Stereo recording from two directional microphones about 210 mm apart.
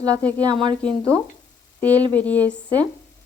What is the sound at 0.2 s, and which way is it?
Speech, 5° left (ahead or behind).